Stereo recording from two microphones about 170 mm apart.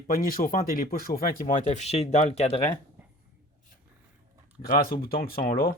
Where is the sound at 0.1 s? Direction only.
55° left (ahead or behind); by 2.6 s 40° left (ahead or behind).